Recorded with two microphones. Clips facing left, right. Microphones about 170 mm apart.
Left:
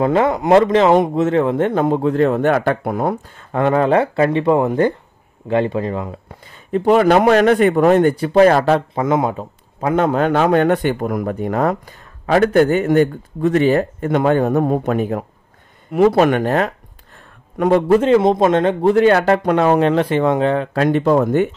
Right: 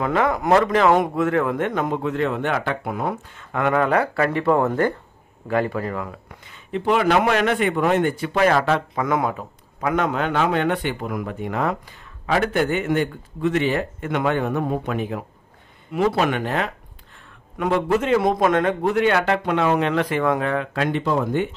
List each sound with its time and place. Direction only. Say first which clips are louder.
0.0 s a man's voice: left 5 dB; 25° left (ahead or behind)
9.0 s a man's voice: left 5 dB; 25° left (ahead or behind); by 21.5 s 50° left (ahead or behind)